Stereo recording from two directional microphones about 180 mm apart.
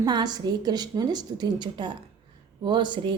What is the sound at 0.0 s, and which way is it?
Speech, 20° right (ahead or behind).